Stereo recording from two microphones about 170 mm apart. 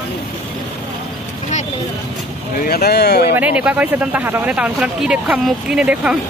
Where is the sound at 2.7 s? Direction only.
70° left (ahead or behind).